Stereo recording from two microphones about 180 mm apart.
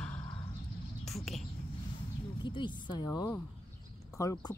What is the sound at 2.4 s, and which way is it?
A woman's voice, 25° left (ahead or behind).